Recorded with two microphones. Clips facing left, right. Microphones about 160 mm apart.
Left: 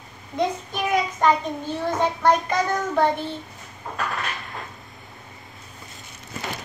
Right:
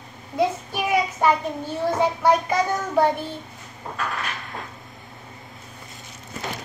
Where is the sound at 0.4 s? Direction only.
10° right (ahead or behind).